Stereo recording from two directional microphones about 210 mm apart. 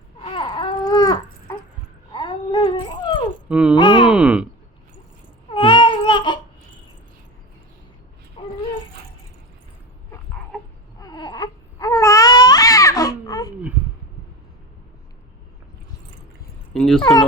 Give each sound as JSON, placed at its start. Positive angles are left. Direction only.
{"t": 0.2, "sound": "baby cry", "side_deg": 25}
{"t": 2.1, "sound": "cat", "side_deg": 25}
{"t": 3.5, "sound": "speech", "side_deg": -5}
{"t": 3.8, "sound": "groan", "side_deg": 20}
{"t": 4.1, "sound": "speech", "side_deg": -5}
{"t": 5.5, "sound": "baby cry", "side_deg": 25}
{"t": 8.4, "sound": "dog", "side_deg": 25}
{"t": 11.0, "sound": "baby cry", "side_deg": 20}
{"t": 16.7, "sound": "a sound", "side_deg": 0}